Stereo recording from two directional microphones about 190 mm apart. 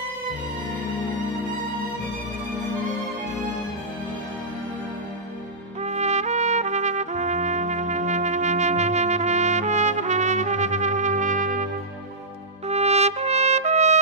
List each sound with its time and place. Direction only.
5.8 s trumpet: 35° right (ahead or behind)
12.6 s trumpet: 35° right (ahead or behind)